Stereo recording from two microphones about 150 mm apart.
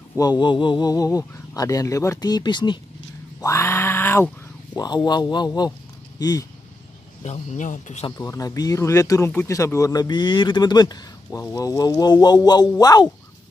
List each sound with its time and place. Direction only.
0.2 s speech: 30° left (ahead or behind)
3.3 s grunt: 20° left (ahead or behind)
4.7 s speech: 30° left (ahead or behind)
7.2 s speech: 50° left (ahead or behind)
8.2 s speech: 20° left (ahead or behind)